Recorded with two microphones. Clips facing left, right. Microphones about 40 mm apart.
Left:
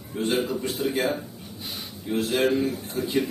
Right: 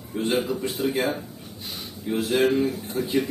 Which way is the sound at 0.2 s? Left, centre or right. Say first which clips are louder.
Right 1 dB; centre.